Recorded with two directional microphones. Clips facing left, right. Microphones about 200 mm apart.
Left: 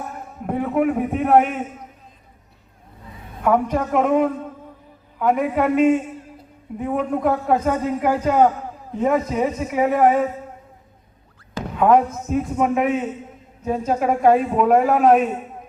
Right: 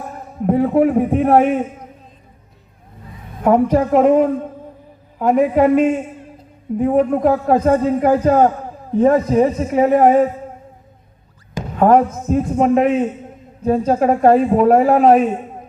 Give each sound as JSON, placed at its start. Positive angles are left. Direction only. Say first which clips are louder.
{"t": 0.4, "sound": "a man's voice", "louder": "right 6 dB", "side_deg": -35}
{"t": 3.4, "sound": "a man's voice", "louder": "right 6 dB", "side_deg": -35}
{"t": 5.3, "sound": "a man's voice", "louder": "right 6 dB", "side_deg": -40}
{"t": 11.8, "sound": "a man's voice", "louder": "right 3 dB", "side_deg": -40}